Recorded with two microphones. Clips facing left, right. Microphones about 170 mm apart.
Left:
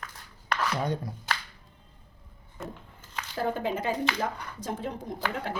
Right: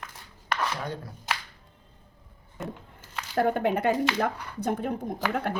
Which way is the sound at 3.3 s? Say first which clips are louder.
Right 5 dB; 60° right (ahead or behind).